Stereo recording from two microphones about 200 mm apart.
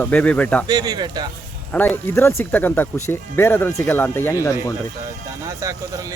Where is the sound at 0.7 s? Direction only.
20° right (ahead or behind).